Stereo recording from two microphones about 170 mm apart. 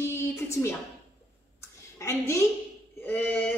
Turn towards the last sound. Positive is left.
turn(degrees=10)  # may be behind; listen again after turning